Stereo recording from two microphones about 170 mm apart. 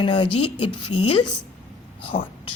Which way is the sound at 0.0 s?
30° left (ahead or behind).